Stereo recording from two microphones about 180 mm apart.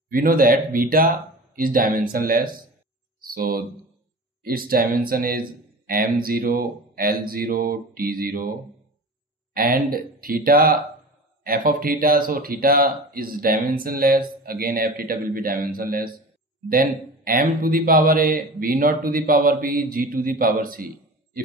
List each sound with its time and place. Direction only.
0.1 s speech: 50° right (ahead or behind)
3.2 s a sound: 55° right (ahead or behind)
4.4 s speech: 55° right (ahead or behind)
9.5 s speech: 55° right (ahead or behind)